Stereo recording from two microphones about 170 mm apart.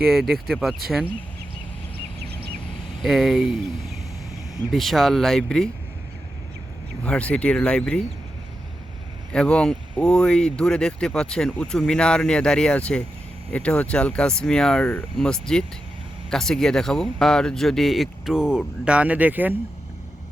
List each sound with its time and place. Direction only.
0.0 s speech: centre (ahead or behind)
3.0 s speech: centre (ahead or behind)
4.7 s speech: centre (ahead or behind)
7.0 s speech: 5° left (ahead or behind)
9.3 s speech: 5° left (ahead or behind); by 19.5 s 10° right (ahead or behind)